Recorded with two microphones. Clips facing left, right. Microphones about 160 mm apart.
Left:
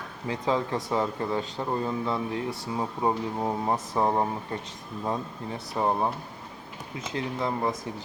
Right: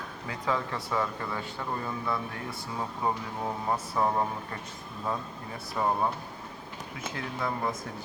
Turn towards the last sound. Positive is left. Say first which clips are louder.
# left 3 dB
turn(degrees=20)  # may be behind; listen again after turning